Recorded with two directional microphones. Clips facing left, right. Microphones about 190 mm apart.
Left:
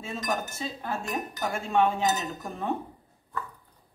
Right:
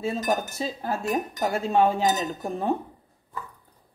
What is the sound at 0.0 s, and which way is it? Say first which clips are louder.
Cutlery: right 6 dB; 35° right (ahead or behind).